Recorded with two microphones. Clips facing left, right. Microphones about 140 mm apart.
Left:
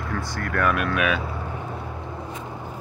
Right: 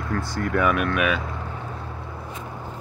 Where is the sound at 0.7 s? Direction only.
Centre (ahead or behind).